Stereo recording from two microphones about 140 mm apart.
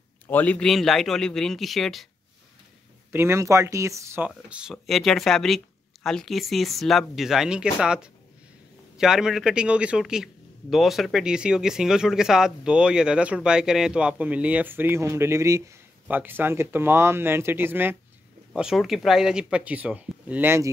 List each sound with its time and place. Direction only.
0.3 s a man's voice: 10° left (ahead or behind)
3.1 s a man's voice: 20° right (ahead or behind)
18.5 s a man's voice: 5° right (ahead or behind)